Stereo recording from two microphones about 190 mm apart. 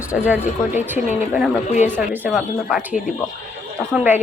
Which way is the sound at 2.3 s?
5° right (ahead or behind).